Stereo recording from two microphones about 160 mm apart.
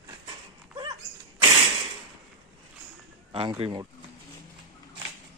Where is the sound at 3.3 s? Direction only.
35° right (ahead or behind).